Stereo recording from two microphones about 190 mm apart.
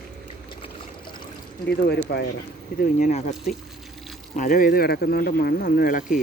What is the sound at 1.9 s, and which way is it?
Speech, 60° left (ahead or behind).